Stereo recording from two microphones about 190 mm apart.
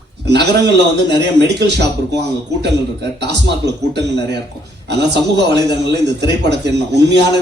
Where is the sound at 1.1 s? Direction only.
65° right (ahead or behind).